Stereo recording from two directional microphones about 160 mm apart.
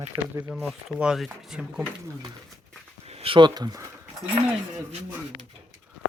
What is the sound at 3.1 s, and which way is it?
Speech, 35° right (ahead or behind).